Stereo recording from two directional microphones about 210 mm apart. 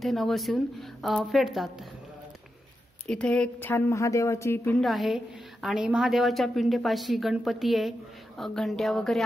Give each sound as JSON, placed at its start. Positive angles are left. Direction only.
{"t": 0.0, "sound": "a woman's voice", "side_deg": 0}
{"t": 3.1, "sound": "a woman's voice", "side_deg": 5}